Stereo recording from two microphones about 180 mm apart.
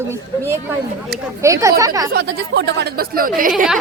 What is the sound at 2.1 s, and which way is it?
Speech, 70° right (ahead or behind).